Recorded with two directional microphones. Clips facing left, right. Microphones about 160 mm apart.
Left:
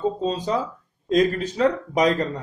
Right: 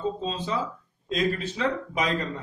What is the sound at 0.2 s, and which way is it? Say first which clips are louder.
A man's voice: left 5 dB; 40° left (ahead or behind).